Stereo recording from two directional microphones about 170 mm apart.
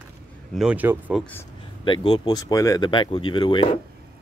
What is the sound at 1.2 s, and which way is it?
Speech, 10° left (ahead or behind).